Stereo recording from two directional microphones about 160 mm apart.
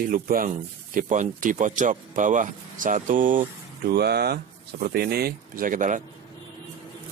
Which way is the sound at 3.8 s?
85° right.